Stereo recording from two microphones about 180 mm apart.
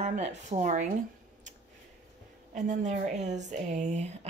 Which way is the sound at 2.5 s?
45° right (ahead or behind).